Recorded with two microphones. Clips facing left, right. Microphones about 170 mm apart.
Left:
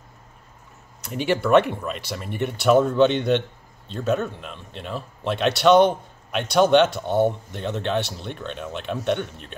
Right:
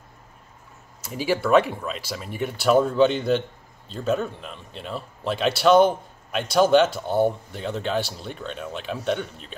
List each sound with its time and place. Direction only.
1.2 s speech: centre (ahead or behind)